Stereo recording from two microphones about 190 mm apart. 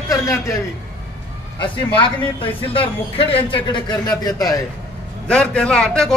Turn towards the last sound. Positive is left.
turn(degrees=5)  # may be behind; listen again after turning